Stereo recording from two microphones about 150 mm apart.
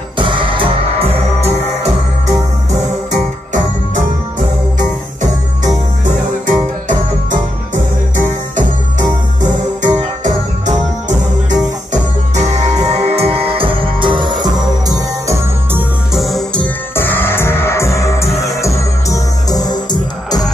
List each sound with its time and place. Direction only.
0.2 s music: 35° right (ahead or behind)
6.0 s music: 60° right (ahead or behind)
9.4 s music: 55° right (ahead or behind); by 15.8 s 20° right (ahead or behind)
16.1 s music: centre (ahead or behind); by 20.4 s 25° left (ahead or behind)